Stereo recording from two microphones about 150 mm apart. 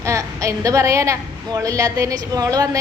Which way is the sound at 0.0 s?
20° right (ahead or behind).